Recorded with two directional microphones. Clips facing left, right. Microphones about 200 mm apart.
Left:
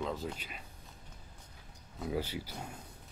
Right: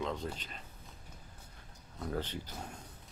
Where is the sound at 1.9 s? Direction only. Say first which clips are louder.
Left 2 dB; 10° left (ahead or behind).